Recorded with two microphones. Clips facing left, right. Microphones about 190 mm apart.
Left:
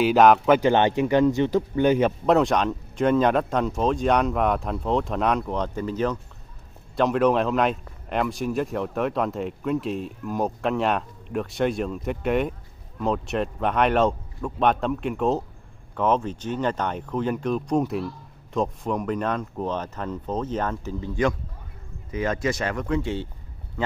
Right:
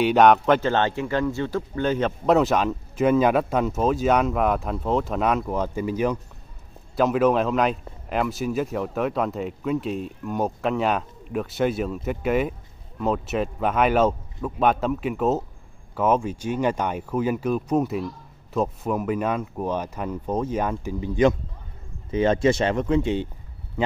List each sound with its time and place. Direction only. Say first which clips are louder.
0.0 s speech: even; centre (ahead or behind)
0.6 s speech: left 3 dB; 15° left (ahead or behind)
2.2 s a man's voice: right 3 dB; centre (ahead or behind); by 23.2 s 20° right (ahead or behind)